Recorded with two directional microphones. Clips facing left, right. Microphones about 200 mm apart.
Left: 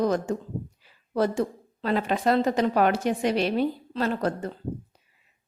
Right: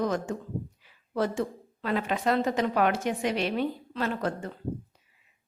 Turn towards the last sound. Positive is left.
turn(degrees=40)  # may be behind; listen again after turning